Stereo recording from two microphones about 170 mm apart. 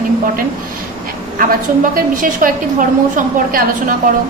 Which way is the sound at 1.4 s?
55° right (ahead or behind).